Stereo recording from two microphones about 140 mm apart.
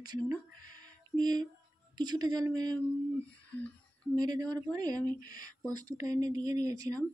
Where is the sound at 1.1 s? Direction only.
30° right (ahead or behind).